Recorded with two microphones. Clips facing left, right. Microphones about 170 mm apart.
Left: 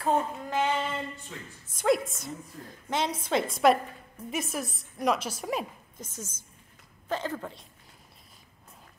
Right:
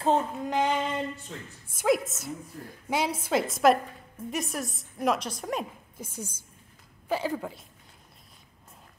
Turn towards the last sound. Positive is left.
turn(degrees=-5)  # may be behind; listen again after turning